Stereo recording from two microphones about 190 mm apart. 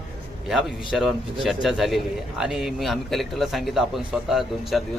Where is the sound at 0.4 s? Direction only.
Centre (ahead or behind).